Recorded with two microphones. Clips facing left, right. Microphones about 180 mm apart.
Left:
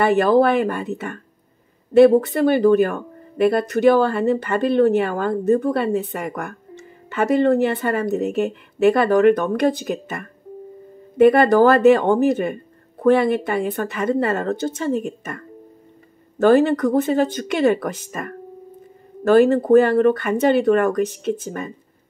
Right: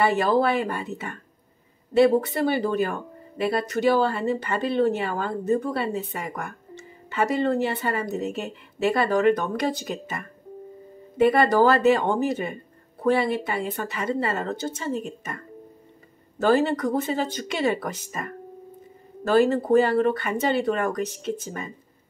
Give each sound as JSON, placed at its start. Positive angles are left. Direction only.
{"t": 0.0, "sound": "speech", "side_deg": 55}